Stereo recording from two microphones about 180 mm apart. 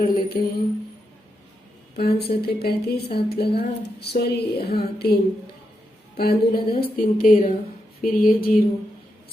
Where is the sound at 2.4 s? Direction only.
60° left (ahead or behind).